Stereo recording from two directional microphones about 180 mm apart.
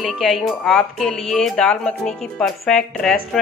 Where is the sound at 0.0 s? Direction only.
Centre (ahead or behind).